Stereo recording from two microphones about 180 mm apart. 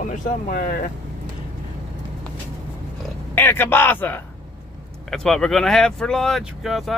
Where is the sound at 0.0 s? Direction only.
45° left (ahead or behind).